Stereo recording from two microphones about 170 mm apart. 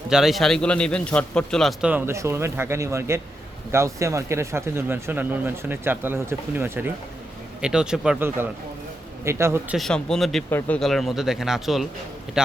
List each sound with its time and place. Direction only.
0.1 s a man's voice: centre (ahead or behind)
1.9 s a man's voice: 15° right (ahead or behind)
9.2 s speech: 15° right (ahead or behind)
9.7 s a man's voice: centre (ahead or behind)